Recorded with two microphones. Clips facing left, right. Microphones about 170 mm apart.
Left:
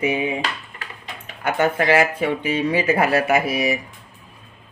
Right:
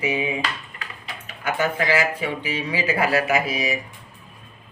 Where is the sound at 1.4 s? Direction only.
60° left (ahead or behind).